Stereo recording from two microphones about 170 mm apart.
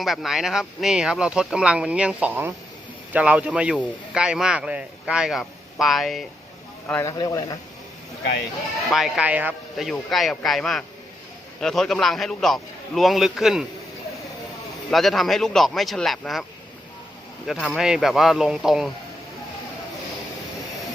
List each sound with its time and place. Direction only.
0.0 s a man's voice: centre (ahead or behind); by 7.4 s 20° left (ahead or behind)
8.9 s speech: centre (ahead or behind)
14.8 s speech: centre (ahead or behind)